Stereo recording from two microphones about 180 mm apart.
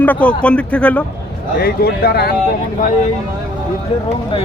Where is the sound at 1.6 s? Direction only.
60° left (ahead or behind).